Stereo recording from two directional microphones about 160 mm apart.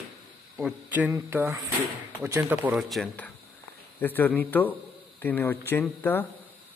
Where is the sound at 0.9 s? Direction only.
15° right (ahead or behind).